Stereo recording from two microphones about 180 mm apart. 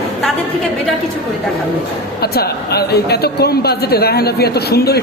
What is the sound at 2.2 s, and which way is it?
Speech, 60° left (ahead or behind).